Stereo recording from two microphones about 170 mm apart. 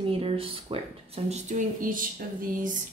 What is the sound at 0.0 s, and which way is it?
Speech, 35° right (ahead or behind).